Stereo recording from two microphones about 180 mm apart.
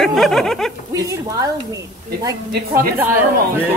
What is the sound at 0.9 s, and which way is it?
A woman's voice, 20° right (ahead or behind).